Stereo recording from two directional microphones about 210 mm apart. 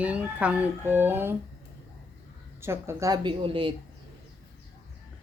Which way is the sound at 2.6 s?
10° right (ahead or behind).